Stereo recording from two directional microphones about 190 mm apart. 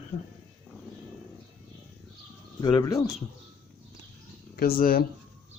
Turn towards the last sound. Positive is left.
turn(degrees=50)  # may be behind; listen again after turning